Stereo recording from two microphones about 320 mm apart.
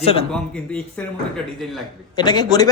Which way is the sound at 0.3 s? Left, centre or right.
Centre.